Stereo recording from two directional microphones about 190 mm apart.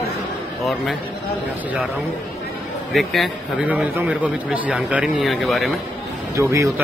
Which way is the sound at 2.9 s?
Centre (ahead or behind).